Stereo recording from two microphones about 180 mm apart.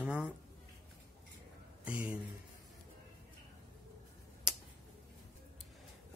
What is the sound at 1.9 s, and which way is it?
Speech, 10° right (ahead or behind).